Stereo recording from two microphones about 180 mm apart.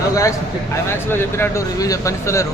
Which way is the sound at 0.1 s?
20° left (ahead or behind).